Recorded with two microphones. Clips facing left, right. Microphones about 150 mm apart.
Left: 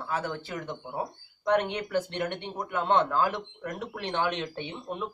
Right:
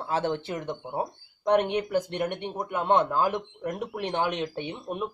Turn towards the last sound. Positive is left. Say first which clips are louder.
# right 3 dB
turn(degrees=-15)  # may be behind; listen again after turning